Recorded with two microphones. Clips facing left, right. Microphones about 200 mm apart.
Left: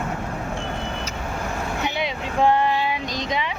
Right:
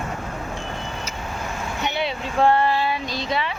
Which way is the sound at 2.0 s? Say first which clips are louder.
Right 2 dB; 15° left (ahead or behind).